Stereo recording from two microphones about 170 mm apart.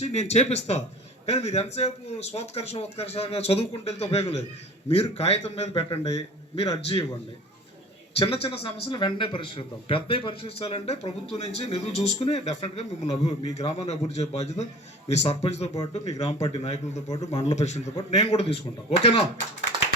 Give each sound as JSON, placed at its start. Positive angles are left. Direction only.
{"t": 0.0, "sound": "speech", "side_deg": 40}
{"t": 8.2, "sound": "speech", "side_deg": 35}